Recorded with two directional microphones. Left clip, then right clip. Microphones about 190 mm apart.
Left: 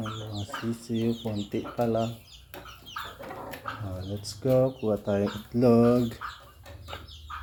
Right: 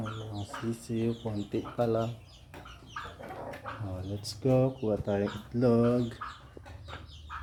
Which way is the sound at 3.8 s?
5° right (ahead or behind).